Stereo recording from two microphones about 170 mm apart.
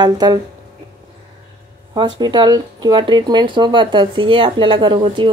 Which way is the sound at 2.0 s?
25° right (ahead or behind).